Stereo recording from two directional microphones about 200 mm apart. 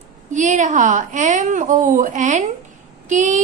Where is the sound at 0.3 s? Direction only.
40° right (ahead or behind).